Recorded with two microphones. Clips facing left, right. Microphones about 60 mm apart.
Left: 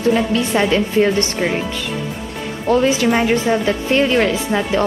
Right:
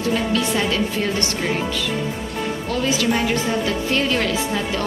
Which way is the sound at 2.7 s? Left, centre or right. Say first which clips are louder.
Left 8 dB; left.